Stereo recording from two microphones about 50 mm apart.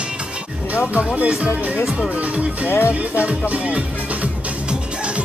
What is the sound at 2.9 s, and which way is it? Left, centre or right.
Music, right.